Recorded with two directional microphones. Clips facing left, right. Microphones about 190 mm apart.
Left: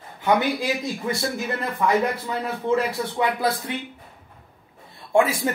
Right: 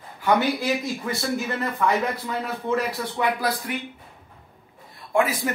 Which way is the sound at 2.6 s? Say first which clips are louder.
Left 3 dB; 25° left (ahead or behind).